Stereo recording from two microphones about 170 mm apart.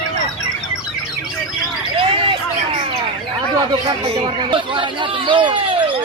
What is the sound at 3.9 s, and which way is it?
Speech, 30° right (ahead or behind).